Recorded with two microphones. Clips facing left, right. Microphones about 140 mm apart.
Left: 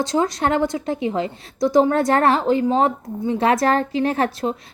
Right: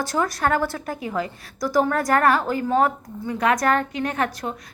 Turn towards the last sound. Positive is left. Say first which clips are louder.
# left 5 dB
turn(degrees=30)  # may be behind; listen again after turning